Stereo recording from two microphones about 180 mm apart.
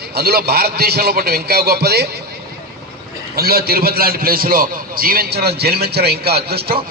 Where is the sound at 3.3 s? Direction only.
55° right (ahead or behind).